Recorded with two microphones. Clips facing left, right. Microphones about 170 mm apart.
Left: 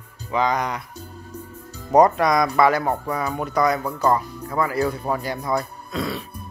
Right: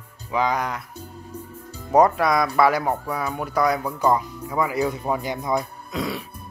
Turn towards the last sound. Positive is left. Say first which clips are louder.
# left 1 dB
turn(degrees=-15)  # may be behind; listen again after turning